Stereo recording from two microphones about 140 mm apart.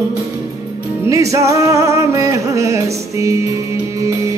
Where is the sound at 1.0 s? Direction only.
25° right (ahead or behind).